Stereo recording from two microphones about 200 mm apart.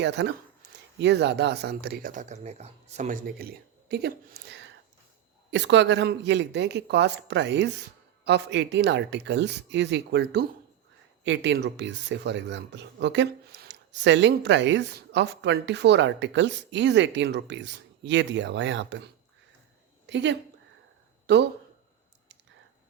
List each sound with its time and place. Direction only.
0.0 s speech: 60° right (ahead or behind); by 3.2 s 35° right (ahead or behind)
3.8 s a woman's voice: 55° right (ahead or behind)
20.1 s a woman's voice: 60° right (ahead or behind)